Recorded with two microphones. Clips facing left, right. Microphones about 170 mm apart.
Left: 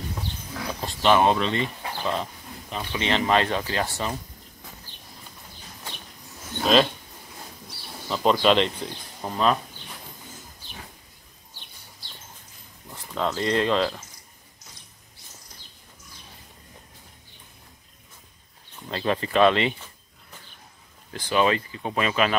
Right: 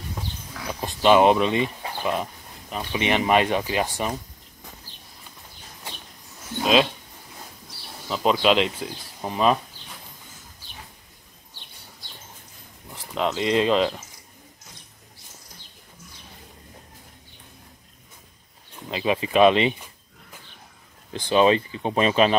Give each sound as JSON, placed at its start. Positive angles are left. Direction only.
{"t": 0.7, "sound": "speech", "side_deg": -15}
{"t": 6.6, "sound": "speech", "side_deg": -5}
{"t": 8.1, "sound": "speech", "side_deg": 0}
{"t": 13.1, "sound": "speech", "side_deg": -15}
{"t": 18.9, "sound": "speech", "side_deg": -10}
{"t": 21.1, "sound": "speech", "side_deg": -20}